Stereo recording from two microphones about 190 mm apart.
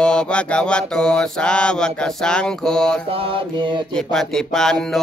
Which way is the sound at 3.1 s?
30° right (ahead or behind).